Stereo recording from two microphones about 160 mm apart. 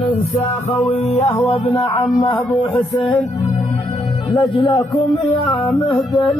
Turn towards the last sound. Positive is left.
turn(degrees=30)  # may be behind; listen again after turning